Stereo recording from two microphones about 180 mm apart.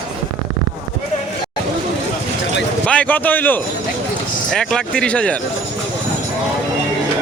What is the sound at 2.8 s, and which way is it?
A man's voice, 5° left (ahead or behind).